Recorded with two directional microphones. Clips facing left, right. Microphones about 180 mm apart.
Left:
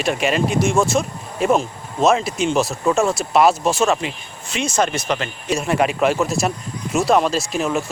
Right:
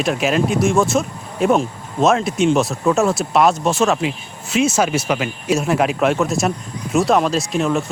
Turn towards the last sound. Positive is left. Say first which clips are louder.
# right 2 dB
turn(degrees=0)  # may be behind; listen again after turning